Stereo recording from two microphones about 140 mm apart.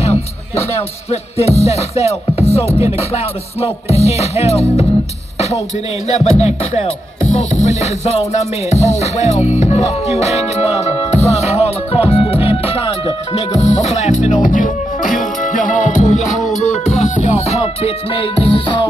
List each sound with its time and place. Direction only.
0.7 s music: 50° left (ahead or behind)
6.0 s music: 50° left (ahead or behind)